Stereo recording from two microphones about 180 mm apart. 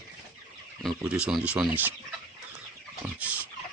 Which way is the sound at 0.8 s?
Centre (ahead or behind).